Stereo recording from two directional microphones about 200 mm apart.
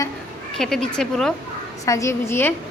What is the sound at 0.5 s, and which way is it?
Speech, centre (ahead or behind).